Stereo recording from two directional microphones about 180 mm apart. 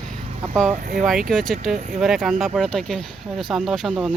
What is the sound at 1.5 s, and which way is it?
Speech, 45° right (ahead or behind).